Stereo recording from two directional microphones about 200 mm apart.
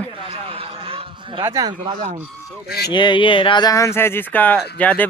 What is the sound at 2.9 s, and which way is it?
Speech, 25° left (ahead or behind).